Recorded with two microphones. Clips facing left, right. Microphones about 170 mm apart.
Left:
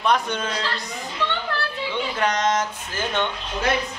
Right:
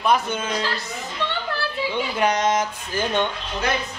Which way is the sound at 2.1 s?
10° right (ahead or behind).